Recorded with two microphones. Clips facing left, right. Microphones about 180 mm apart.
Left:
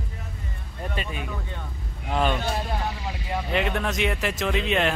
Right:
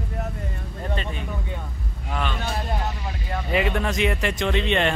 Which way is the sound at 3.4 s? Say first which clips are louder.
Right 3 dB; centre (ahead or behind).